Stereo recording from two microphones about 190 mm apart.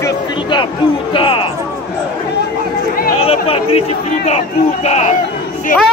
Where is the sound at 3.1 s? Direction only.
30° left (ahead or behind).